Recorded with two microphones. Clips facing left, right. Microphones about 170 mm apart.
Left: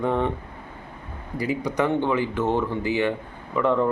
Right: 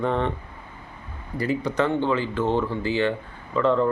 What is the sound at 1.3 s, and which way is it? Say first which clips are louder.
Speech: right 1 dB; 15° left (ahead or behind).